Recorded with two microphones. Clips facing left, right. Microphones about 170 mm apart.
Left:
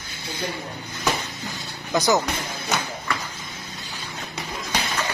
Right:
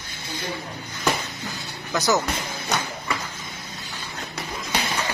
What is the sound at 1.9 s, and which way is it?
Speech, 15° left (ahead or behind).